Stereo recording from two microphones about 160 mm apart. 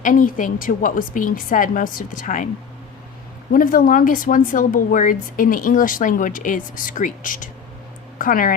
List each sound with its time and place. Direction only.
0.0 s speech: 55° left (ahead or behind)
3.5 s speech: 60° left (ahead or behind)